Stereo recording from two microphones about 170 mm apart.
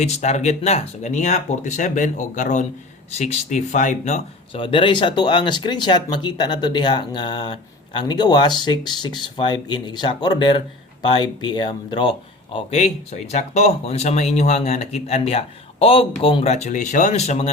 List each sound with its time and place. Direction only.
0.0 s speech: 40° left (ahead or behind)
12.5 s speech: 40° left (ahead or behind)